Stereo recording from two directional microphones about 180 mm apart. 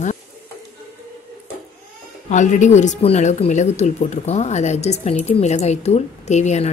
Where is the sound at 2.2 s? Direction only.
40° left (ahead or behind).